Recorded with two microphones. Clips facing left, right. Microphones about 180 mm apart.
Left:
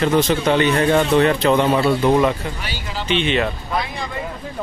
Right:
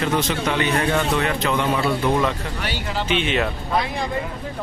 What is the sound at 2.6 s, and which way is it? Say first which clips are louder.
Speech: right 3 dB; 60° right (ahead or behind).